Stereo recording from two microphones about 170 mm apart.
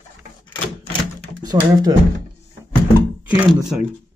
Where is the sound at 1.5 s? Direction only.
20° right (ahead or behind).